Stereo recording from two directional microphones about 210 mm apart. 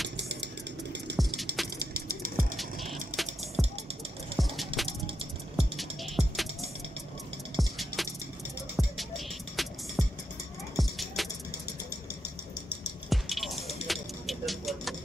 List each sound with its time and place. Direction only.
0.2 s a sound: 55° right (ahead or behind)
1.1 s music: centre (ahead or behind)
2.0 s music: 45° right (ahead or behind)
2.5 s music: centre (ahead or behind)
4.8 s a sound: 25° right (ahead or behind)
5.6 s music: centre (ahead or behind)
13.1 s music: centre (ahead or behind)